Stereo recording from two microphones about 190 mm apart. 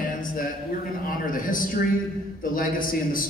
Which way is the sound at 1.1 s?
45° left (ahead or behind).